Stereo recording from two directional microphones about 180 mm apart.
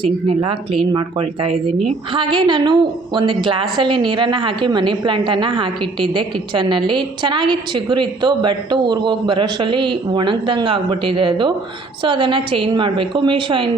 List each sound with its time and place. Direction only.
0.0 s speech: 30° right (ahead or behind)